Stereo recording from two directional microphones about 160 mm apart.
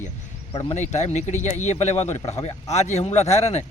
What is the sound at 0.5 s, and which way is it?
Speech, 40° left (ahead or behind).